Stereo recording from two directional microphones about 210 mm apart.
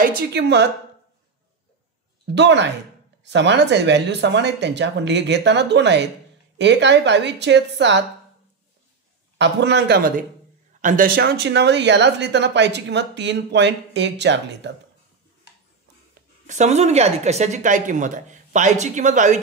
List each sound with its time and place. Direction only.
0.0 s speech: 45° right (ahead or behind)
2.3 s speech: 55° right (ahead or behind)
9.4 s speech: 55° right (ahead or behind)
16.2 s speech: 35° right (ahead or behind)